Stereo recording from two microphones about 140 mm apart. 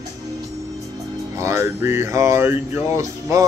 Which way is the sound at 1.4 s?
20° right (ahead or behind).